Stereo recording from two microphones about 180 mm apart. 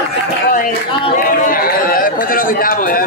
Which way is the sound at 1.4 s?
50° left (ahead or behind).